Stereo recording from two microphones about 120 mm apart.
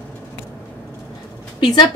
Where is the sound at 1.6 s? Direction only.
40° left (ahead or behind).